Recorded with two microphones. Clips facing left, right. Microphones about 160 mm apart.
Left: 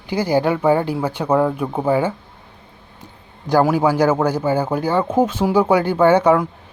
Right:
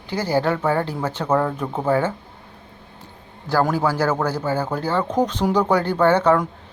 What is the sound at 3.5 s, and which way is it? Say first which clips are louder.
Speech: left 4 dB; 15° left (ahead or behind).